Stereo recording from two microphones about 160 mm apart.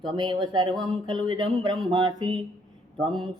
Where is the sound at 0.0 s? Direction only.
30° right (ahead or behind).